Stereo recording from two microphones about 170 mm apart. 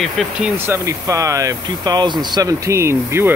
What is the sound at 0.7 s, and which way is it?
Speech, 15° right (ahead or behind).